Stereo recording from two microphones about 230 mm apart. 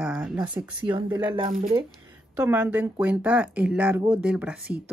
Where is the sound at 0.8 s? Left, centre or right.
Centre.